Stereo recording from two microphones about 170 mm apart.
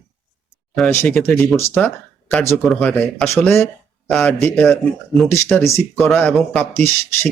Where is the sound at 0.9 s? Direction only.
15° left (ahead or behind).